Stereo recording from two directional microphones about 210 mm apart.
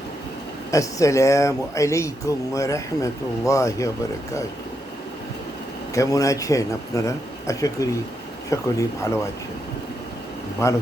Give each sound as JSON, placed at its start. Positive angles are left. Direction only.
{"t": 0.7, "sound": "speech", "side_deg": 15}
{"t": 5.9, "sound": "speech", "side_deg": 15}